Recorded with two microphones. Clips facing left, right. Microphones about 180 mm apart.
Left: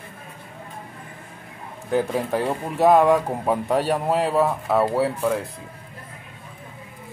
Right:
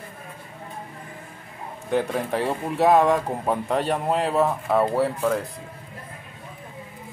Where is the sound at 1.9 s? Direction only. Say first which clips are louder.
Left 2 dB; centre (ahead or behind).